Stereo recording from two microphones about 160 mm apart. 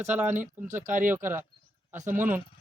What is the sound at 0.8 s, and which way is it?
Speech, 55° right (ahead or behind).